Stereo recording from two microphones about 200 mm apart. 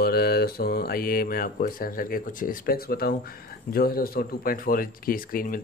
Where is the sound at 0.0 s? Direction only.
50° left (ahead or behind).